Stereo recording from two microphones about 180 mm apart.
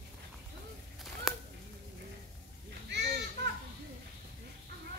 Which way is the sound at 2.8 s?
65° right (ahead or behind).